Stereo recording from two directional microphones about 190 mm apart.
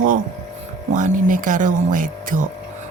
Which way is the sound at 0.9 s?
45° right (ahead or behind).